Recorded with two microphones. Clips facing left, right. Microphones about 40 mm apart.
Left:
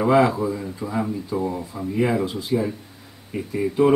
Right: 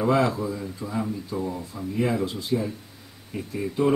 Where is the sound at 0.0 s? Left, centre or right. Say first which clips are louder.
Left 5 dB; centre.